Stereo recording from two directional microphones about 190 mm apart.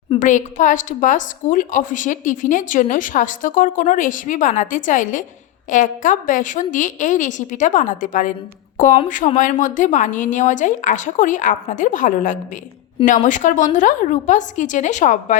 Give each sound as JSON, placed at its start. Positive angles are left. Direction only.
{"t": 0.2, "sound": "a woman's voice", "side_deg": 40}